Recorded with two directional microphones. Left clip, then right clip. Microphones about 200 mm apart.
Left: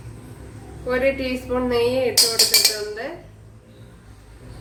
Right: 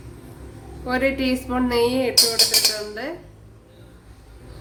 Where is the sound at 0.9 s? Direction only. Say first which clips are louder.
Left 1 dB; 55° right (ahead or behind).